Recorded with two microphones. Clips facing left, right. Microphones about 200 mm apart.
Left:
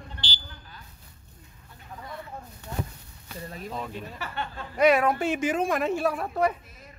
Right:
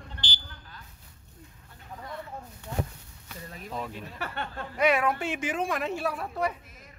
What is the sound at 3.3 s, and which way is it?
Speech, 35° left (ahead or behind).